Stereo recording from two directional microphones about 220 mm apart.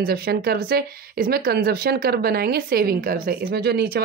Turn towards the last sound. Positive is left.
turn(degrees=-45)  # may be behind; listen again after turning